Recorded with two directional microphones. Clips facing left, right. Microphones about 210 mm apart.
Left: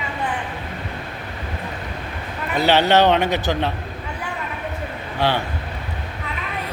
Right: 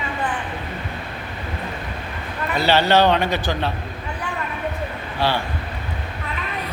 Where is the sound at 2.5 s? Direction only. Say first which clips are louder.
Left 1 dB; 15° left (ahead or behind).